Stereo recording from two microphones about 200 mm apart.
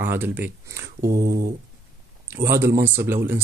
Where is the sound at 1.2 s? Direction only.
45° right (ahead or behind).